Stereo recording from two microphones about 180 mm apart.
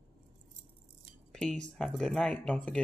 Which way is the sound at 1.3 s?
5° left (ahead or behind).